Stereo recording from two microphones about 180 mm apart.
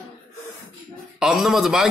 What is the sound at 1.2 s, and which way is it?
Speech, 5° right (ahead or behind).